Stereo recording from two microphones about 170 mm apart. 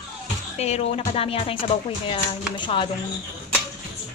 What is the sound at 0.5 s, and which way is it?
A child's voice, 40° left (ahead or behind).